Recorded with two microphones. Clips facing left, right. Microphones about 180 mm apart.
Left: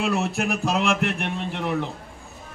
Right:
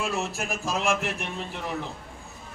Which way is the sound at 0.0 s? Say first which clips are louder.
Left 6 dB; 60° left (ahead or behind).